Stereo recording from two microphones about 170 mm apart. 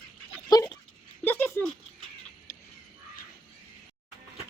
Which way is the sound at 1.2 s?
10° left (ahead or behind).